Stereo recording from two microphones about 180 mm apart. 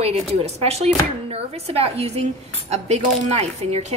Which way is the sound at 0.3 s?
35° right (ahead or behind).